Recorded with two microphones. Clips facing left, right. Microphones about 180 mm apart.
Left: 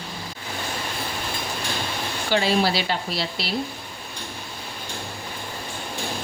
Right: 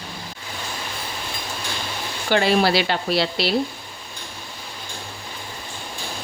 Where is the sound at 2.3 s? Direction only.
60° right (ahead or behind).